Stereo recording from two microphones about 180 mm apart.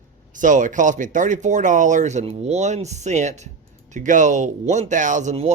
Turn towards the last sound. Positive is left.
turn(degrees=-40)  # may be behind; listen again after turning